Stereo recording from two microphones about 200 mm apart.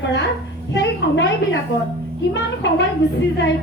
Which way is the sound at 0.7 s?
60° left (ahead or behind).